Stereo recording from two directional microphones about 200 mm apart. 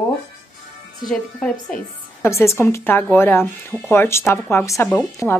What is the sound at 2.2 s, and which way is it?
Speech, 15° left (ahead or behind).